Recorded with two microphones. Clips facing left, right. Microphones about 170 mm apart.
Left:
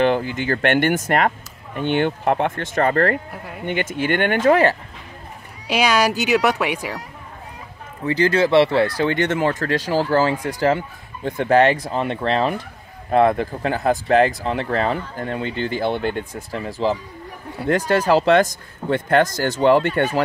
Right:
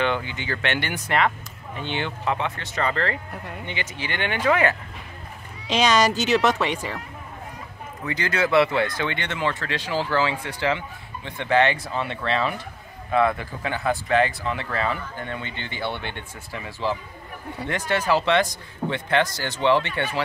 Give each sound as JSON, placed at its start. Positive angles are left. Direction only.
{"t": 0.0, "sound": "speech", "side_deg": 40}
{"t": 5.7, "sound": "speech", "side_deg": 10}
{"t": 8.0, "sound": "speech", "side_deg": 30}